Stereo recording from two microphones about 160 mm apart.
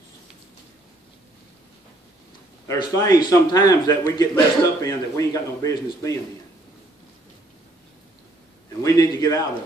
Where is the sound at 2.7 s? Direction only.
20° left (ahead or behind).